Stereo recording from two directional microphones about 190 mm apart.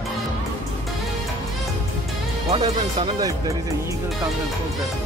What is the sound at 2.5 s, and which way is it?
Speech, 25° right (ahead or behind).